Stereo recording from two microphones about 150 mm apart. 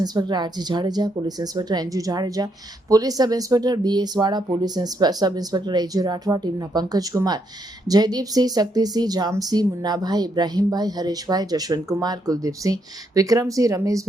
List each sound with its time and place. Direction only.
0.0 s speech: 30° right (ahead or behind)